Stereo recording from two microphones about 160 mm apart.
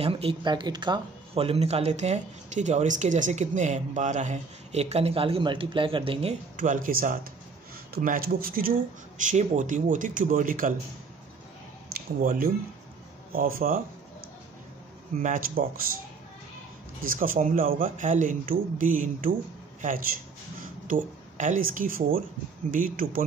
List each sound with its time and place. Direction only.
0.0 s speech: 35° right (ahead or behind)
6.5 s speech: 55° right (ahead or behind)
9.2 s a man's voice: 50° right (ahead or behind)
11.9 s speech: 60° right (ahead or behind)
15.2 s speech: 60° right (ahead or behind)
17.1 s speech: 60° right (ahead or behind)